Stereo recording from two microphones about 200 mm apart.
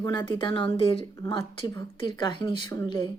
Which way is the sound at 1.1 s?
15° left (ahead or behind).